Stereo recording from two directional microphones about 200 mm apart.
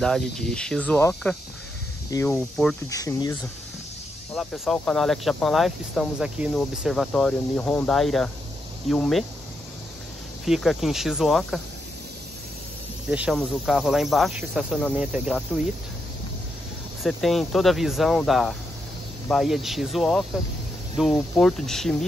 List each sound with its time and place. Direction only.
0.0 s speech: centre (ahead or behind)
4.3 s speech: centre (ahead or behind)
10.4 s speech: centre (ahead or behind)
13.1 s speech: 5° right (ahead or behind)
17.0 s speech: centre (ahead or behind)